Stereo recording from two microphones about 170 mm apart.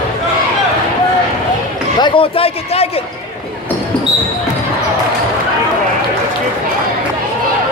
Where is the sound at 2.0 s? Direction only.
30° left (ahead or behind).